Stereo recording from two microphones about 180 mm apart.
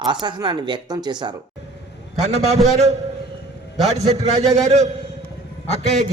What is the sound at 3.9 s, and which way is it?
A man's voice, 35° right (ahead or behind).